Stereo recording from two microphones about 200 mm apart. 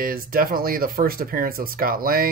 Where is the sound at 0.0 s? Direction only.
45° right (ahead or behind).